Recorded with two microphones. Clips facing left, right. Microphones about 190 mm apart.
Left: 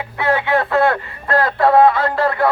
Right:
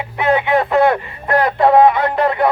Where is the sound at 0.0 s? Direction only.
20° right (ahead or behind).